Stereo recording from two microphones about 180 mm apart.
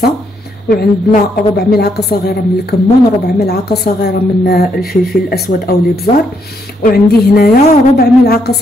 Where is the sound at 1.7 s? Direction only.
60° left (ahead or behind).